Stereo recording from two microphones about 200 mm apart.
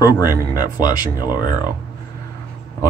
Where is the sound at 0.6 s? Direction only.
20° left (ahead or behind).